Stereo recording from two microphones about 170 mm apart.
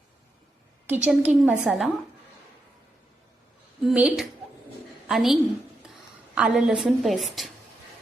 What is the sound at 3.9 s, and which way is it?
A woman's voice, 5° right (ahead or behind).